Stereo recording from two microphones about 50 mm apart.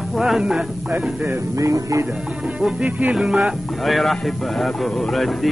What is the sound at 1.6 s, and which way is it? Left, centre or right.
Music, right.